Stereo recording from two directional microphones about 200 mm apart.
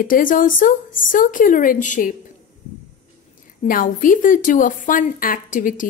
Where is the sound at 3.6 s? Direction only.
40° left (ahead or behind).